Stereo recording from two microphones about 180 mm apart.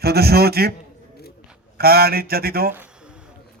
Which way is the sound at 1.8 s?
60° right (ahead or behind).